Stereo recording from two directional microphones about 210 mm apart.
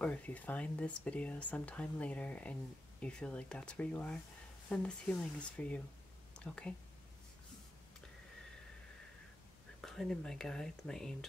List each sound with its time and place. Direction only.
0.0 s speech: 5° left (ahead or behind)
9.8 s speech: centre (ahead or behind)